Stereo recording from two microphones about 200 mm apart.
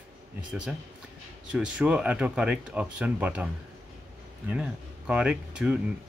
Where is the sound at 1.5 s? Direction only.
5° right (ahead or behind).